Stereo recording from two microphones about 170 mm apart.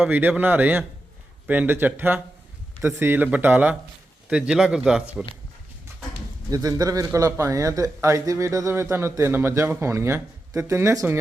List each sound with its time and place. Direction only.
0.0 s speech: 10° right (ahead or behind)
6.5 s speech: 20° right (ahead or behind)